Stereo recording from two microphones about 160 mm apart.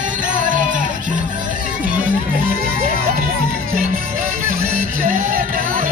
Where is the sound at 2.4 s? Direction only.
65° right (ahead or behind).